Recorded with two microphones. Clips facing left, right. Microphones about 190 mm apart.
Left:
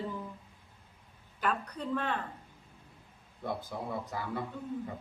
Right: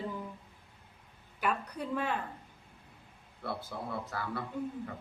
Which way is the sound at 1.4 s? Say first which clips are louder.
Even; 10° right (ahead or behind).